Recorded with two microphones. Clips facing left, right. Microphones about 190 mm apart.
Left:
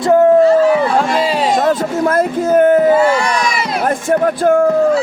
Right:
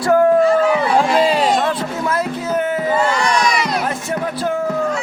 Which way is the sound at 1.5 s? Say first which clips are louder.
Left 5 dB; 45° left (ahead or behind).